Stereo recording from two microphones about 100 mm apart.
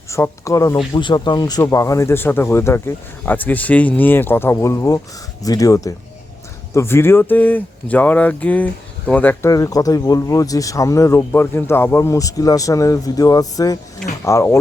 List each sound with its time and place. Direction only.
0.1 s speech: 30° left (ahead or behind)
0.9 s speech: 50° left (ahead or behind)
1.6 s speech: 30° left (ahead or behind)
6.7 s speech: 25° left (ahead or behind)
9.4 s speech: 35° left (ahead or behind)